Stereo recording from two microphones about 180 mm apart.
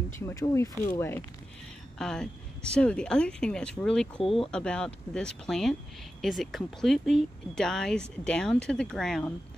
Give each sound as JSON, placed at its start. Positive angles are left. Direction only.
{"t": 0.2, "sound": "speech", "side_deg": 15}